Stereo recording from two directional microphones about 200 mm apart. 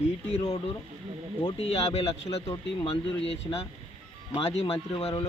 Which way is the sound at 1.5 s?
30° left (ahead or behind).